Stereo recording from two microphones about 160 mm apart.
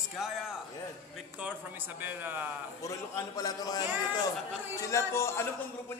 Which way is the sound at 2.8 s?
20° left (ahead or behind).